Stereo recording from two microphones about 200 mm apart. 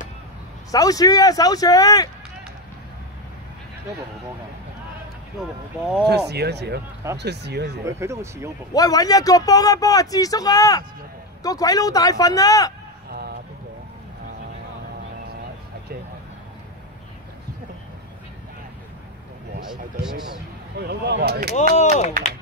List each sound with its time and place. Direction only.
0.7 s speech: 20° left (ahead or behind)
5.4 s speech: centre (ahead or behind)
6.0 s speech: 55° right (ahead or behind)
7.8 s speech: 15° right (ahead or behind)
8.7 s speech: 20° left (ahead or behind)
13.1 s a sound: 50° right (ahead or behind)
19.7 s speech: 5° right (ahead or behind)
20.8 s speech: 55° right (ahead or behind)
21.7 s speech: 35° left (ahead or behind)